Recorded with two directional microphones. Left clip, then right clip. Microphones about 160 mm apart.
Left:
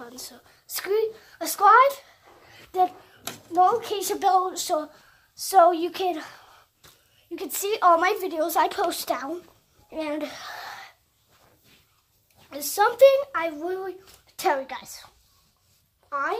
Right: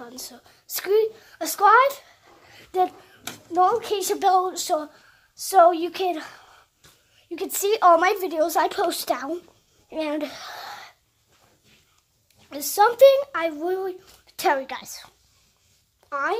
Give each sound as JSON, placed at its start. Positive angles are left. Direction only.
{"t": 0.0, "sound": "a woman's voice", "side_deg": -15}
{"t": 6.1, "sound": "speech", "side_deg": -5}
{"t": 7.2, "sound": "a child's voice", "side_deg": -20}
{"t": 9.8, "sound": "a sound", "side_deg": -15}
{"t": 12.5, "sound": "a child's voice", "side_deg": -20}
{"t": 16.1, "sound": "a child's voice", "side_deg": -25}